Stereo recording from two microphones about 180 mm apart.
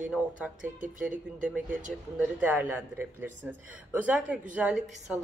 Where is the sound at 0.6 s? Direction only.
45° right (ahead or behind).